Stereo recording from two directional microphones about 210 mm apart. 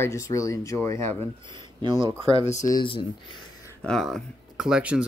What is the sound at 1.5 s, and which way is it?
Speech, 20° right (ahead or behind).